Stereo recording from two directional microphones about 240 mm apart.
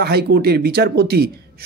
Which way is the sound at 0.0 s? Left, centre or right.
Right.